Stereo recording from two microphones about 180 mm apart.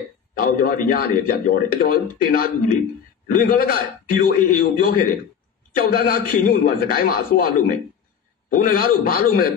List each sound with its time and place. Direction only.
0.3 s a man's voice: 55° left (ahead or behind)